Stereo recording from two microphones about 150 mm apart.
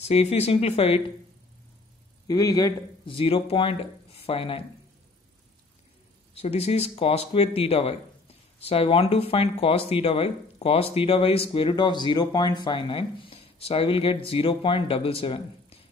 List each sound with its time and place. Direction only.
0.0 s speech: 45° left (ahead or behind)
2.2 s a man's voice: 25° left (ahead or behind)
3.1 s speech: 35° left (ahead or behind)
6.3 s speech: 45° left (ahead or behind)